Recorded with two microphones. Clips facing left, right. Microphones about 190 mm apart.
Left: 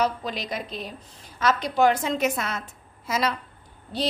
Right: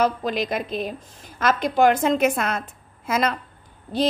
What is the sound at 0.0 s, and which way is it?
A woman's voice, 50° right (ahead or behind).